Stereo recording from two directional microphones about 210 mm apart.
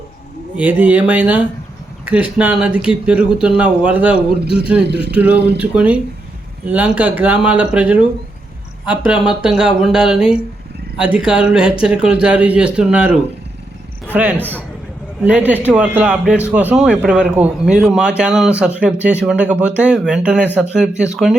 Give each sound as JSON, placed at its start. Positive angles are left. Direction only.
{"t": 0.5, "sound": "a man's voice", "side_deg": -5}
{"t": 14.3, "sound": "a man's voice", "side_deg": 10}
{"t": 15.2, "sound": "speech", "side_deg": -5}